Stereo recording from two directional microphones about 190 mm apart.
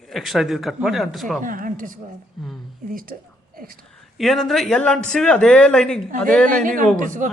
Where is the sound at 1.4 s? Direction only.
45° right (ahead or behind).